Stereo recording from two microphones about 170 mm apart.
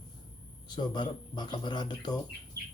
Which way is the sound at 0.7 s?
25° left (ahead or behind).